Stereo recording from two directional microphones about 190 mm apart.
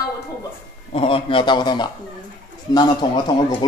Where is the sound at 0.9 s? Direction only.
30° left (ahead or behind).